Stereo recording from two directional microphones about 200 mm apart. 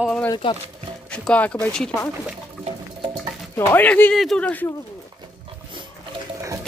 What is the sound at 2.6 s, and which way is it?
Music, 25° right (ahead or behind).